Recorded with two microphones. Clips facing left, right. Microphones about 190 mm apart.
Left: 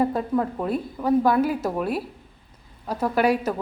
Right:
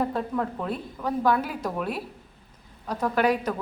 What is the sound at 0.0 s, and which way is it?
A woman's voice, 10° left (ahead or behind).